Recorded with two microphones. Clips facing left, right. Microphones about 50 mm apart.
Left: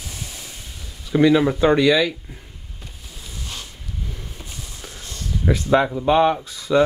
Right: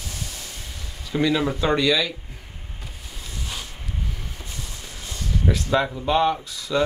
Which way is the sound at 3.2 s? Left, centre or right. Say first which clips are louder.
Right 1 dB; centre.